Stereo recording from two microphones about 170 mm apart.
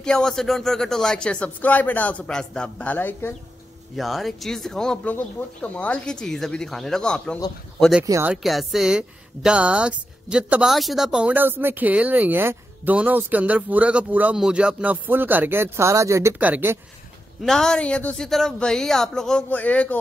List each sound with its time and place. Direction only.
0.0 s speech: 5° left (ahead or behind)
3.9 s speech: centre (ahead or behind)
8.1 s a woman's voice: 15° right (ahead or behind)
8.4 s a woman's voice: centre (ahead or behind)
17.4 s speech: 5° left (ahead or behind)